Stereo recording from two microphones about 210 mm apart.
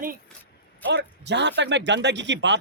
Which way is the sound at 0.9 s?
55° right (ahead or behind).